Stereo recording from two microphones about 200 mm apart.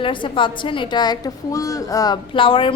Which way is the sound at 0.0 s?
25° left (ahead or behind).